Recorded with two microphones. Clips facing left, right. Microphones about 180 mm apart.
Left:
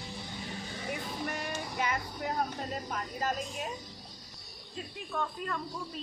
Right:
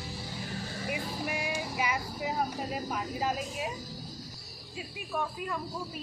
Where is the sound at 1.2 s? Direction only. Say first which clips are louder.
Right 2 dB; 5° right (ahead or behind).